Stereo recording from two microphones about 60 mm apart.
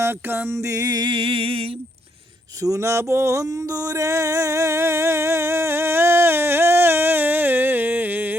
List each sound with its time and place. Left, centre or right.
0.0 s music: right
2.6 s music: right
3.4 s music: right